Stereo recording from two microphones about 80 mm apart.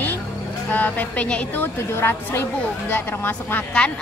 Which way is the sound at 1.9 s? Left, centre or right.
Left.